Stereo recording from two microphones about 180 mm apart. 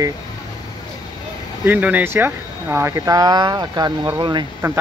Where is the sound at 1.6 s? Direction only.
10° right (ahead or behind).